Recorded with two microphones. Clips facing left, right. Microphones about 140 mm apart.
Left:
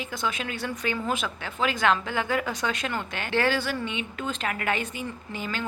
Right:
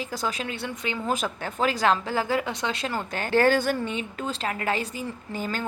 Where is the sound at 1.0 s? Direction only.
40° right (ahead or behind).